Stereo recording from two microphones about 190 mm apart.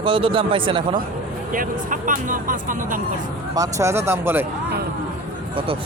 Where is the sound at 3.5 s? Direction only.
15° right (ahead or behind).